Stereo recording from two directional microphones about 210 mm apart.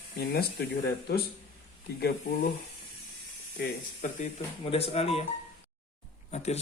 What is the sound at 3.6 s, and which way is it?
Speech, 40° left (ahead or behind).